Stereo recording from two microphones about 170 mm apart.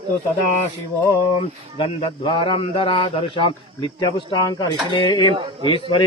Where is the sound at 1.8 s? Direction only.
30° left (ahead or behind).